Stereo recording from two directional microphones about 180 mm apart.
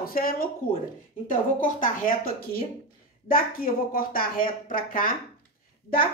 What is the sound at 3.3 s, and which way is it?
Speech, 55° left (ahead or behind).